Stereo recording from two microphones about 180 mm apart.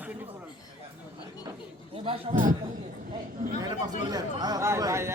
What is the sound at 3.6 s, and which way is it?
Speech, 20° right (ahead or behind).